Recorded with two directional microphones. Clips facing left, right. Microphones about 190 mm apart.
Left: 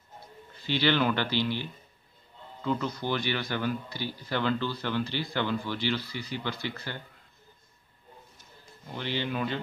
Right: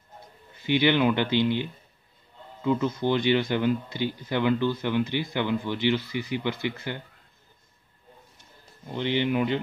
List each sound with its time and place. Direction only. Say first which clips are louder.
0.7 s speech: right 4 dB; 15° right (ahead or behind)
8.9 s speech: right 7 dB; 20° right (ahead or behind)